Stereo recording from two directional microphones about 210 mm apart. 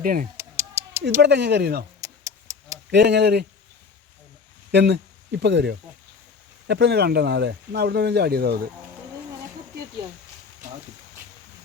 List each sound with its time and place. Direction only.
0.0 s speech: 45° right (ahead or behind)
0.3 s a sound: 10° right (ahead or behind)
1.2 s speech: 55° right (ahead or behind)
2.0 s a sound: 15° right (ahead or behind)
2.9 s speech: 55° right (ahead or behind)
4.7 s speech: 55° right (ahead or behind)